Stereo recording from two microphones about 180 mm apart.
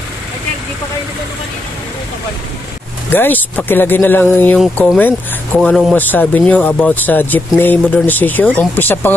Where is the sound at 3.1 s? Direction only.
10° left (ahead or behind).